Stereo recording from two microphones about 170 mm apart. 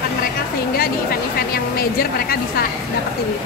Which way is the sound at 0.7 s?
60° left (ahead or behind).